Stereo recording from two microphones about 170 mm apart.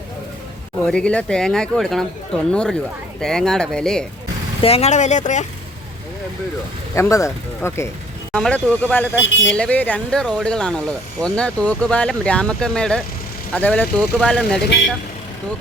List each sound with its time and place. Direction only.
0.9 s speech: 5° left (ahead or behind)
4.6 s speech: 35° left (ahead or behind)
6.9 s speech: 15° left (ahead or behind)
8.3 s speech: 5° left (ahead or behind)